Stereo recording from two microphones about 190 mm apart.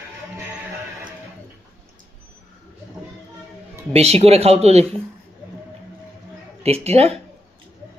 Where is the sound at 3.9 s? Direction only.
30° right (ahead or behind).